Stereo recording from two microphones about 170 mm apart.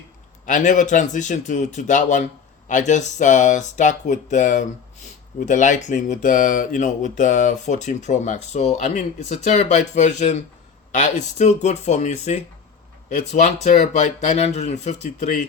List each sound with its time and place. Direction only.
0.4 s speech: 50° left (ahead or behind)